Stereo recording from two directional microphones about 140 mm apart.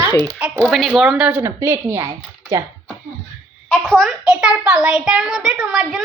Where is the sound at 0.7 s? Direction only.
Centre (ahead or behind).